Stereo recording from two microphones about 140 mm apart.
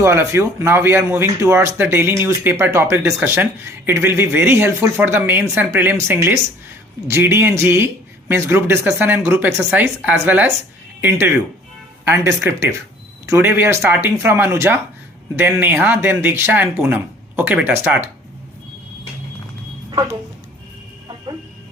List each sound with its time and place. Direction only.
0.0 s speech: 20° right (ahead or behind)
12.0 s speech: 15° right (ahead or behind)